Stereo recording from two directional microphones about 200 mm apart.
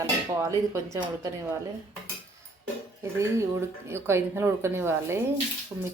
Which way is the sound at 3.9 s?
10° right (ahead or behind).